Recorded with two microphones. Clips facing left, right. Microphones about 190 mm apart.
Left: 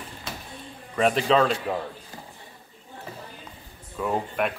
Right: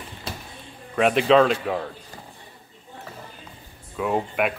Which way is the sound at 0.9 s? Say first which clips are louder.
Right 4 dB; 5° right (ahead or behind).